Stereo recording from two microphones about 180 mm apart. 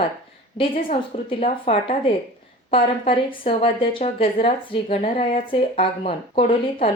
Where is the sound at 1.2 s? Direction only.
30° left (ahead or behind).